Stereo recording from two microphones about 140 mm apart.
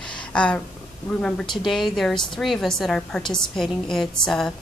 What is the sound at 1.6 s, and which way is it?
A woman's voice, centre (ahead or behind).